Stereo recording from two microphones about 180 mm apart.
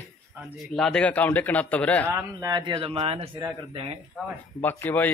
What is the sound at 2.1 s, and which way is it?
A man's voice, 15° right (ahead or behind).